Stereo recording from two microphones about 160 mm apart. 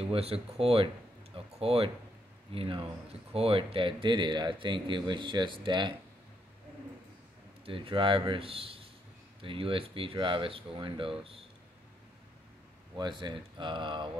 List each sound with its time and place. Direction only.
0.0 s speech: 40° right (ahead or behind)
1.3 s a sound: 35° right (ahead or behind)
2.5 s speech: 35° right (ahead or behind)
7.6 s speech: 35° right (ahead or behind)
12.9 s speech: 30° right (ahead or behind)